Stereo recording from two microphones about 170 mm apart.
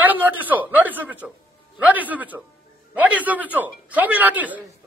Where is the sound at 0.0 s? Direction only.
10° right (ahead or behind).